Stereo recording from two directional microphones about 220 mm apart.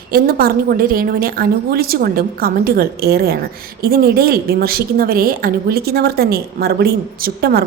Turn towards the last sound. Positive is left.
turn(degrees=-40)  # may be behind; listen again after turning